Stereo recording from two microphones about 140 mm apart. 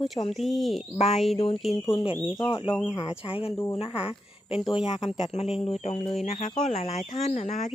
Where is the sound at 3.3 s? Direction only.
40° left (ahead or behind).